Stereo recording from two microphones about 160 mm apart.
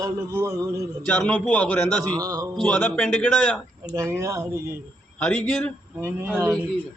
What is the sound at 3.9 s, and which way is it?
Speech, 20° right (ahead or behind).